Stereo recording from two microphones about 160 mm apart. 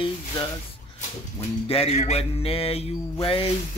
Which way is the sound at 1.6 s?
40° left (ahead or behind).